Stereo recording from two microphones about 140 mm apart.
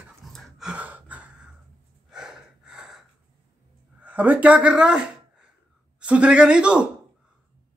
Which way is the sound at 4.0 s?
10° right (ahead or behind).